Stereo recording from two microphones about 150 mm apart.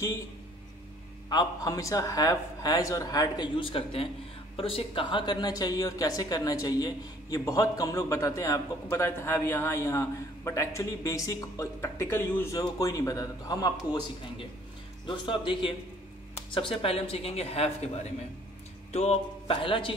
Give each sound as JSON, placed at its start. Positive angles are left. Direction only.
{"t": 1.3, "sound": "a woman's voice", "side_deg": 25}
{"t": 15.0, "sound": "speech", "side_deg": 35}
{"t": 18.9, "sound": "speech", "side_deg": 45}